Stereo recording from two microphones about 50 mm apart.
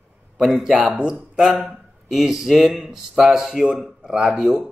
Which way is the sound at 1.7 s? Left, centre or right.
Centre.